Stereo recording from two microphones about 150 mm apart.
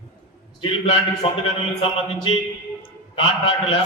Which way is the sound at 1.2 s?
35° left (ahead or behind).